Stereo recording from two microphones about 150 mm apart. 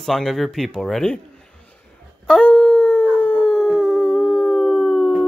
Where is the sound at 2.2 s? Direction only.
5° left (ahead or behind).